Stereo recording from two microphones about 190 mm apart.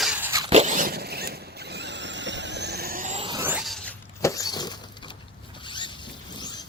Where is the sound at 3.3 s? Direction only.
10° right (ahead or behind).